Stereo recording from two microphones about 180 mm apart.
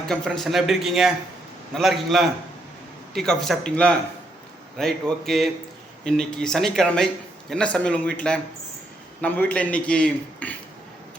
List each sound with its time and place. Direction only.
0.1 s a man's voice: centre (ahead or behind)